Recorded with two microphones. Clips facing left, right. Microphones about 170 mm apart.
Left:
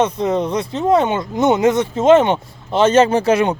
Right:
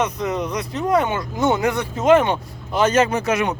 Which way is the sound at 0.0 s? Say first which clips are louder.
Left 5 dB; 30° left (ahead or behind).